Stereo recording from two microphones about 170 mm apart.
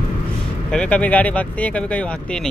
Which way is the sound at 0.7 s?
5° left (ahead or behind).